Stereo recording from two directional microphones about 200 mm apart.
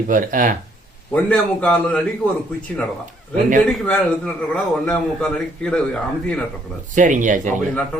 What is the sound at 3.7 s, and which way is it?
Speech, 5° left (ahead or behind).